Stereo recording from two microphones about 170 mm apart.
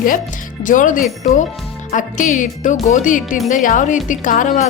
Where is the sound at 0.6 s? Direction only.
50° left (ahead or behind).